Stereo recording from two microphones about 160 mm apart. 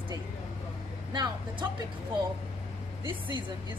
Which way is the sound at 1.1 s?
25° right (ahead or behind).